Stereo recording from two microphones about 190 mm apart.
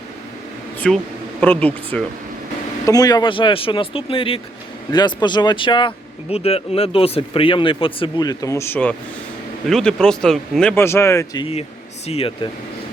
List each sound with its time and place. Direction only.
0.8 s speech: 5° left (ahead or behind)
2.8 s speech: 20° left (ahead or behind)
12.0 s speech: 30° left (ahead or behind)